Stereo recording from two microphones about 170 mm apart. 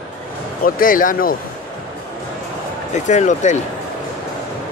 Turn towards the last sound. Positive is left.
turn(degrees=45)  # may be behind; listen again after turning